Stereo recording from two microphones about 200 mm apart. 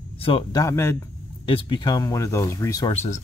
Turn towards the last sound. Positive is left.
turn(degrees=35)  # may be behind; listen again after turning